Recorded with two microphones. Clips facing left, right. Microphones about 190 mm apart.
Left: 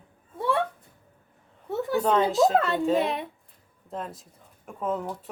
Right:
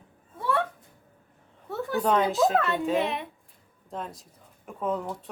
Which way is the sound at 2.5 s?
30° left (ahead or behind).